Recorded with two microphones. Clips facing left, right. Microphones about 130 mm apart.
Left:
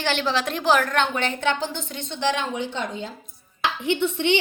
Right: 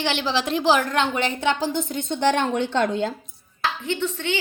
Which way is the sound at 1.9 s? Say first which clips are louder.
Right 3 dB; 50° right (ahead or behind).